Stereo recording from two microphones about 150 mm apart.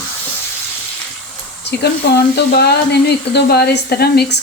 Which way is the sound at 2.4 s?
90° left.